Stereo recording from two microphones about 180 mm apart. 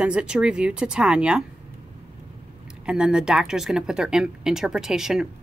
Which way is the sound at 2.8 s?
5° right (ahead or behind).